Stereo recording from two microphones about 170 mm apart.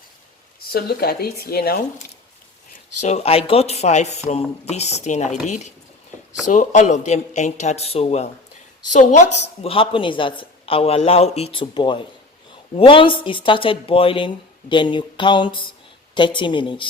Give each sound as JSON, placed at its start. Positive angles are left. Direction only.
{"t": 0.6, "sound": "speech", "side_deg": 65}
{"t": 3.0, "sound": "a man's voice", "side_deg": 40}
{"t": 9.6, "sound": "a woman's voice", "side_deg": 30}